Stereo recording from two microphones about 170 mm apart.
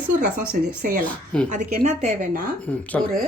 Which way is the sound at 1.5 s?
50° right (ahead or behind).